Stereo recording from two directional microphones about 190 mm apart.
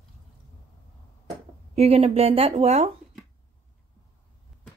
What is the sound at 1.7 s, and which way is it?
Speech, 30° right (ahead or behind).